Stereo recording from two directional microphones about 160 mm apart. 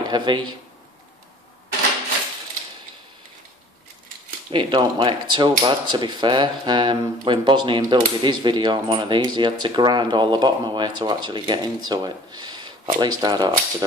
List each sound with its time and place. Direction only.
0.0 s speech: 25° right (ahead or behind)
4.5 s speech: 30° right (ahead or behind)